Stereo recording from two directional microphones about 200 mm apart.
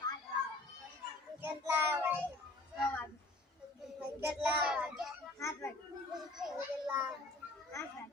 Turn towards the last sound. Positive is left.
turn(degrees=-5)  # may be behind; listen again after turning